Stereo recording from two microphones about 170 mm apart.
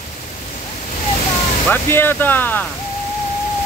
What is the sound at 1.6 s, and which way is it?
Speech, 10° left (ahead or behind).